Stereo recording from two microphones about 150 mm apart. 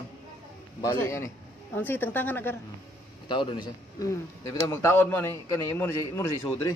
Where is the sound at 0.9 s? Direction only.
15° left (ahead or behind).